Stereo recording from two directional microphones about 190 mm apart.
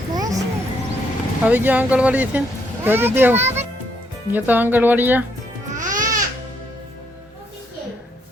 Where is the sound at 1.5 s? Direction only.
10° right (ahead or behind).